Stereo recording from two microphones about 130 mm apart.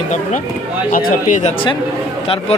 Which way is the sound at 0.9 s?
85° left.